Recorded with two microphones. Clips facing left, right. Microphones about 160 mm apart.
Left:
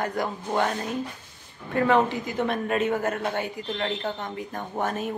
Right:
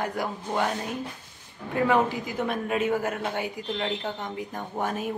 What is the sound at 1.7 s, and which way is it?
A woman's voice, 10° right (ahead or behind).